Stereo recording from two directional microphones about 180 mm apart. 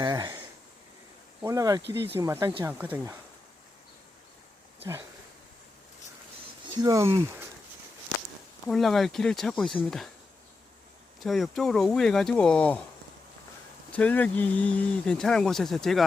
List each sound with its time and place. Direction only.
0.0 s speech: 20° right (ahead or behind)
1.4 s speech: 15° right (ahead or behind)
6.8 s speech: 20° right (ahead or behind)
8.6 s speech: centre (ahead or behind)
11.2 s speech: centre (ahead or behind)
13.9 s speech: 10° left (ahead or behind)